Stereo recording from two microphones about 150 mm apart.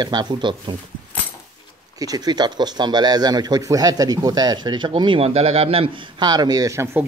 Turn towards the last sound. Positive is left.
turn(degrees=-15)  # may be behind; listen again after turning